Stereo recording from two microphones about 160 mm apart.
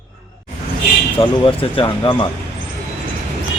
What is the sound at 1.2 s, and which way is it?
Speech, 30° left (ahead or behind).